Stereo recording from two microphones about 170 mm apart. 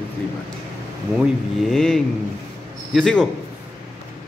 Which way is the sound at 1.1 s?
Centre (ahead or behind).